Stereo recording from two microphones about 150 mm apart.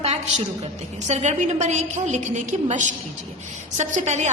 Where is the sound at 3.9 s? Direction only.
50° right (ahead or behind).